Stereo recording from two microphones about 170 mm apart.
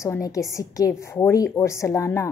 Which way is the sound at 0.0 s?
20° left (ahead or behind).